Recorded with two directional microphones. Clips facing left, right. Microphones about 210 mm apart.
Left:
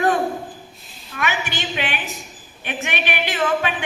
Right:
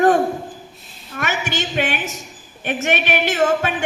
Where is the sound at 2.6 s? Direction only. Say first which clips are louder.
Right 5 dB; 45° right (ahead or behind).